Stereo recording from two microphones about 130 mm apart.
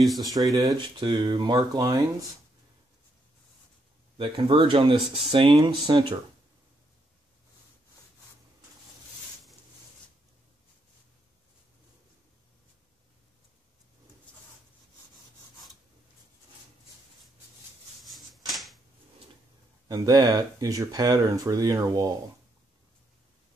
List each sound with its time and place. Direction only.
0.0 s speech: centre (ahead or behind)
0.7 s speech: 40° right (ahead or behind)
4.2 s speech: 40° right (ahead or behind)
18.0 s a sound: centre (ahead or behind)
19.9 s speech: 30° right (ahead or behind)